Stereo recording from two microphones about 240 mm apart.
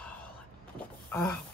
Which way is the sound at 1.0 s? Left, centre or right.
Centre.